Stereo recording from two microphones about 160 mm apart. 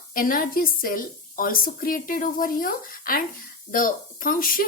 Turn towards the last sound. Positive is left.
turn(degrees=60)  # may be behind; listen again after turning